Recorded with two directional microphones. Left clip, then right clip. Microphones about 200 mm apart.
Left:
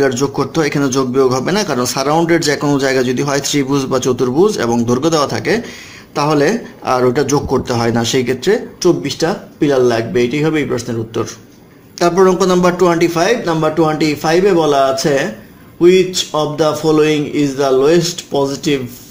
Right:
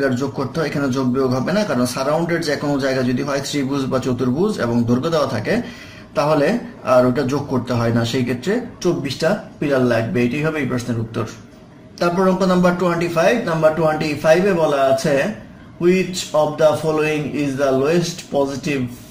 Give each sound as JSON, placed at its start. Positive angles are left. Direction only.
{"t": 0.0, "sound": "a man's voice", "side_deg": 45}